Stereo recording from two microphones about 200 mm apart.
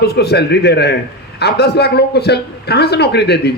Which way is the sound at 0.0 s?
55° left (ahead or behind).